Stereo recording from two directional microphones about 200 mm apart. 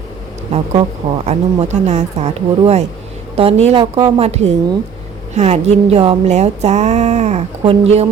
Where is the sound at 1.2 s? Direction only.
35° right (ahead or behind).